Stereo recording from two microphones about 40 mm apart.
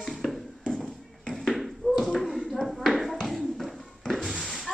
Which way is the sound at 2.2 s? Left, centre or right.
Centre.